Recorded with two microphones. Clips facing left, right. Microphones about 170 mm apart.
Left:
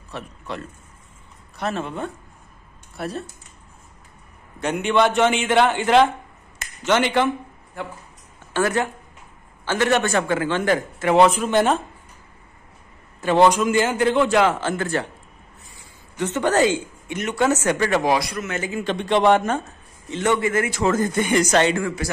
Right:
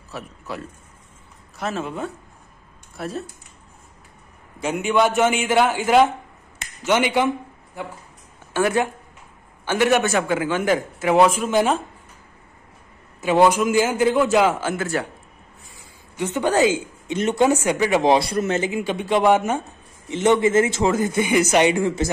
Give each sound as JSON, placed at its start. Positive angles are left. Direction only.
{"t": 0.1, "sound": "speech", "side_deg": -5}
{"t": 4.6, "sound": "a man's voice", "side_deg": -5}
{"t": 8.5, "sound": "a man's voice", "side_deg": -15}
{"t": 13.2, "sound": "a man's voice", "side_deg": -10}
{"t": 16.2, "sound": "a man's voice", "side_deg": -10}
{"t": 17.1, "sound": "a man's voice", "side_deg": -25}
{"t": 17.4, "sound": "a man's voice", "side_deg": -10}
{"t": 18.0, "sound": "a man's voice", "side_deg": -25}
{"t": 18.7, "sound": "a man's voice", "side_deg": -10}
{"t": 20.1, "sound": "a man's voice", "side_deg": -20}
{"t": 20.9, "sound": "a man's voice", "side_deg": -10}